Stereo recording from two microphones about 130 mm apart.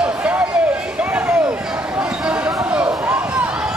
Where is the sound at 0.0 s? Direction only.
10° right (ahead or behind).